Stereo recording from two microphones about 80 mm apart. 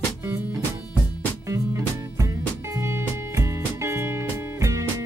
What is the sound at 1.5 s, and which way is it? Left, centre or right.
Music, right.